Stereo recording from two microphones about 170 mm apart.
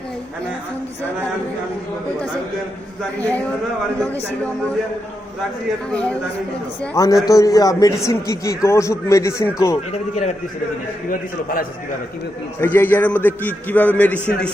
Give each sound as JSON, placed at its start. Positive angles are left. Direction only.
{"t": 5.9, "sound": "a man's voice", "side_deg": 5}
{"t": 6.9, "sound": "a man's voice", "side_deg": 20}
{"t": 9.9, "sound": "a man's voice", "side_deg": 40}
{"t": 12.5, "sound": "a man's voice", "side_deg": 10}